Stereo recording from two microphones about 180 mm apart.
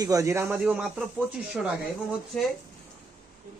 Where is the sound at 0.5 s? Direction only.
5° right (ahead or behind).